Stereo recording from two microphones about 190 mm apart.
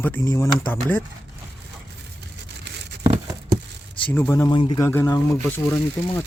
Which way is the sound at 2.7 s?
65° right (ahead or behind).